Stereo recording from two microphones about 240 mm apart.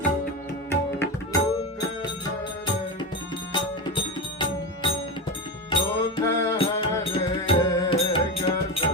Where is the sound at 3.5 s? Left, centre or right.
Centre.